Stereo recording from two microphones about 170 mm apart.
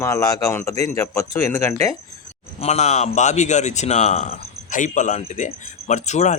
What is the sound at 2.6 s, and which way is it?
Speech, 40° left (ahead or behind).